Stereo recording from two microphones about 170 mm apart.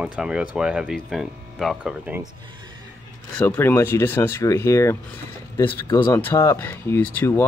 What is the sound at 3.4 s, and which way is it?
Speech, 10° left (ahead or behind).